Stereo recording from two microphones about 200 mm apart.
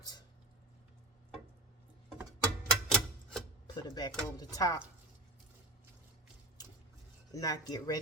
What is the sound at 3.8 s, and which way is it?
Speech, 20° left (ahead or behind).